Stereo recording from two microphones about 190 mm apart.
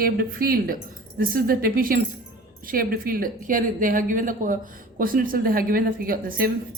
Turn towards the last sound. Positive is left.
turn(degrees=-50)  # may be behind; listen again after turning